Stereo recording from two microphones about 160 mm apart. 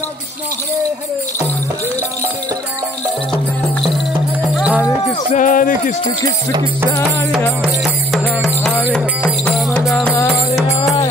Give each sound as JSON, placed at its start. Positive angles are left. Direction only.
{"t": 4.6, "sound": "music", "side_deg": -5}
{"t": 5.3, "sound": "speech", "side_deg": 55}
{"t": 7.6, "sound": "music", "side_deg": 0}
{"t": 9.2, "sound": "music", "side_deg": 10}